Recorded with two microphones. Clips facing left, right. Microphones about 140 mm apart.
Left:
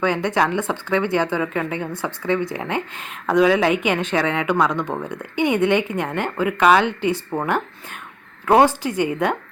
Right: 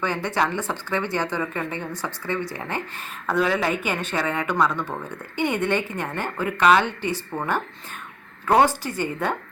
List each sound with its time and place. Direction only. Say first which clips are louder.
0.0 s speech: left 4 dB; 15° left (ahead or behind)